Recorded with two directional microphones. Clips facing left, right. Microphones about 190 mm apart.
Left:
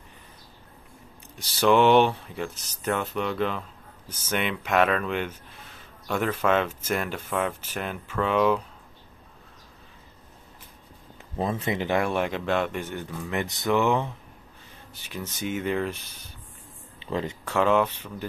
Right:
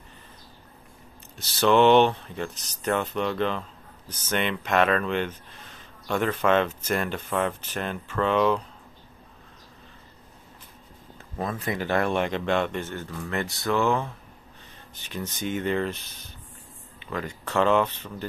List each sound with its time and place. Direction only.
1.3 s speech: 10° left (ahead or behind)
11.3 s speech: 25° left (ahead or behind)
15.0 s speech: 5° left (ahead or behind)
17.0 s speech: 25° left (ahead or behind)
17.5 s speech: 5° left (ahead or behind)